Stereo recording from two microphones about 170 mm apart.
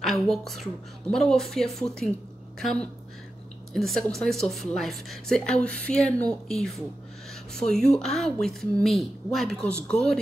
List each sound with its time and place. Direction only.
0.0 s a woman's voice: centre (ahead or behind)